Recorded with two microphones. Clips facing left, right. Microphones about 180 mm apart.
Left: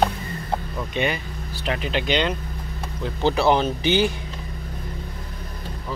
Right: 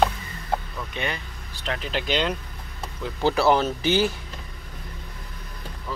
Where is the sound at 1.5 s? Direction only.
5° left (ahead or behind).